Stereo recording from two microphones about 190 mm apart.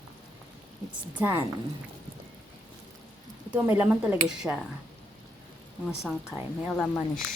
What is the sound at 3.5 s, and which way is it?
Speech, 10° right (ahead or behind).